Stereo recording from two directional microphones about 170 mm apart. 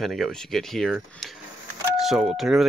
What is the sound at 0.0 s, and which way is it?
Speech, centre (ahead or behind).